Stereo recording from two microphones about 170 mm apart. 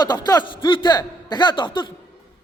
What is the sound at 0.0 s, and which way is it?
A man's voice, 25° left (ahead or behind).